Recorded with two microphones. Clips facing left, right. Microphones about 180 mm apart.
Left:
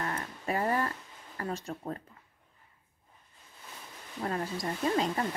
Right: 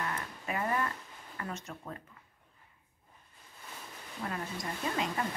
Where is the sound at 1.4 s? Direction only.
35° left (ahead or behind).